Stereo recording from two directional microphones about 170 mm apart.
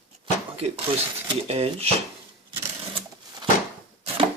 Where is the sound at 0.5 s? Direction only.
35° right (ahead or behind).